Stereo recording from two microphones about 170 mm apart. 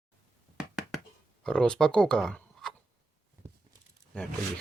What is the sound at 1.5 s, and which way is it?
Speech, 5° left (ahead or behind).